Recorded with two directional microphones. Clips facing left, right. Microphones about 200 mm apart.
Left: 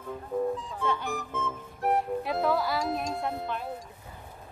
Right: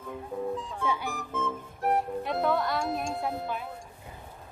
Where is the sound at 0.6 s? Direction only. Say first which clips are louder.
Even; centre (ahead or behind).